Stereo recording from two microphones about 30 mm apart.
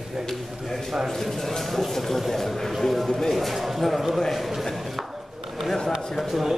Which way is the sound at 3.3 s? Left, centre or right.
Centre.